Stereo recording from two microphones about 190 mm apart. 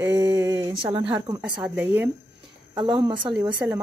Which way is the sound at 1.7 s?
5° right (ahead or behind).